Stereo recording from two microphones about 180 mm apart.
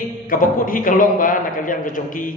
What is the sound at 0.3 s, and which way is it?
A man's voice, 50° left (ahead or behind).